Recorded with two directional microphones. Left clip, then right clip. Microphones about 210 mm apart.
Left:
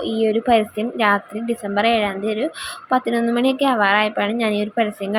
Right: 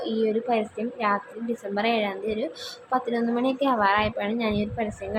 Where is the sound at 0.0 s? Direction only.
15° left (ahead or behind).